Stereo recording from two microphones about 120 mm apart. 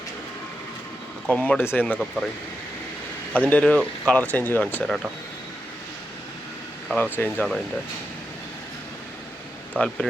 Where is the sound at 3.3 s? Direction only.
10° left (ahead or behind).